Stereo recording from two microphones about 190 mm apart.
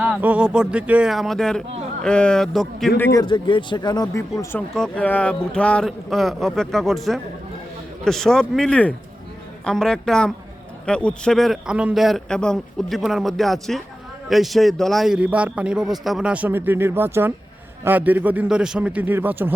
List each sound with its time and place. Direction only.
0.0 s a man's voice: 5° right (ahead or behind)
3.0 s a man's voice: 15° left (ahead or behind); by 19.5 s 10° right (ahead or behind)